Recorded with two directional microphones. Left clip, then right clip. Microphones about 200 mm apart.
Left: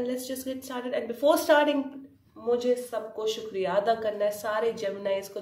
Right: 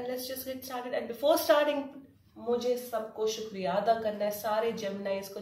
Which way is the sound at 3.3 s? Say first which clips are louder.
Left 3 dB; 40° left (ahead or behind).